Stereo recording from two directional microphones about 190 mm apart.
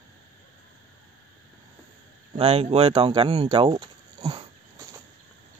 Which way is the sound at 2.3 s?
30° right (ahead or behind).